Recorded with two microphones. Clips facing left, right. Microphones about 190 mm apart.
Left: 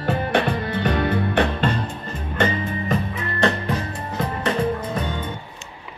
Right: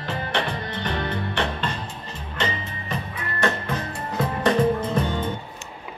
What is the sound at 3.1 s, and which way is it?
Music, 20° left (ahead or behind).